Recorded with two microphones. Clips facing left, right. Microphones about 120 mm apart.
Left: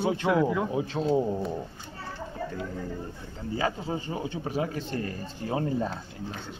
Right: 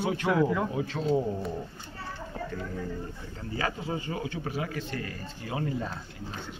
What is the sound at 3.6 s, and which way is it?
A man's voice, 25° left (ahead or behind).